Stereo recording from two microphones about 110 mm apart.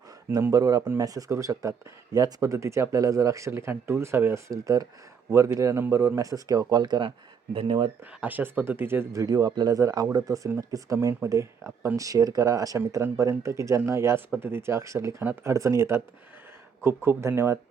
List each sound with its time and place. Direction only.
0.5 s speech: 35° right (ahead or behind)
7.5 s speech: 50° right (ahead or behind)
8.2 s speech: 15° right (ahead or behind)
9.2 s speech: 35° right (ahead or behind)